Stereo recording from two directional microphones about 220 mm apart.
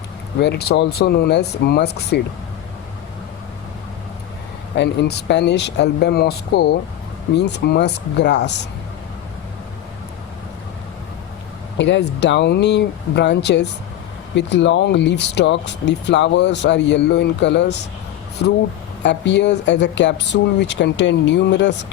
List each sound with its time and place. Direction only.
0.3 s speech: 50° left (ahead or behind)
4.7 s speech: 50° left (ahead or behind)
11.8 s speech: 55° left (ahead or behind)
19.0 s speech: 55° left (ahead or behind)